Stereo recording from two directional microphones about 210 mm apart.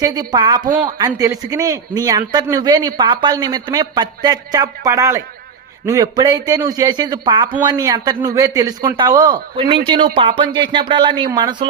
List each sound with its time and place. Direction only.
0.0 s a man's voice: 20° right (ahead or behind)